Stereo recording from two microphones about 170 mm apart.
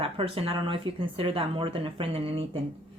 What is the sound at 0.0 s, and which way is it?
A woman's voice, 35° right (ahead or behind).